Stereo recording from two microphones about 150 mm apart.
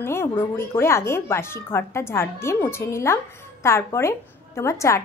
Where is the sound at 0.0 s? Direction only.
15° left (ahead or behind).